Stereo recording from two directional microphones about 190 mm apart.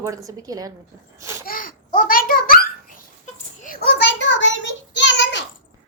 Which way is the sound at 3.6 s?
40° left (ahead or behind).